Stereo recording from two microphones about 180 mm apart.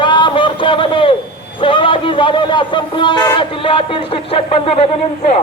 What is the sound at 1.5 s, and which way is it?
Speech, 25° left (ahead or behind).